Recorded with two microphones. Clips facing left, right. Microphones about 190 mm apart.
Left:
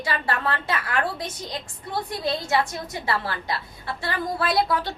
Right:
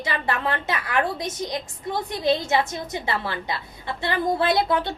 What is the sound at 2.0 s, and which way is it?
Speech, 20° right (ahead or behind).